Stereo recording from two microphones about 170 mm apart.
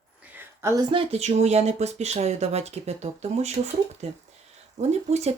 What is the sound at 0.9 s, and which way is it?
Speech, 40° right (ahead or behind).